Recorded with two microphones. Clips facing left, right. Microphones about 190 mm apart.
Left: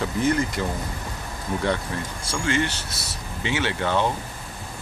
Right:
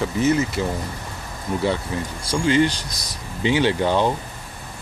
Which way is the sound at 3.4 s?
30° right (ahead or behind).